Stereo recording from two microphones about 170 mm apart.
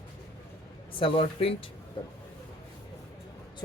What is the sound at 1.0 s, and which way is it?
Speech, 30° left (ahead or behind).